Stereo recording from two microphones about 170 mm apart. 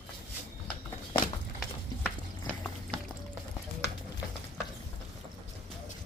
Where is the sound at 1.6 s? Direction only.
5° right (ahead or behind).